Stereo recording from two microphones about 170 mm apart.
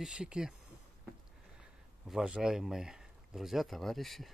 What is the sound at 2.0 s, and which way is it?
Speech, 5° right (ahead or behind).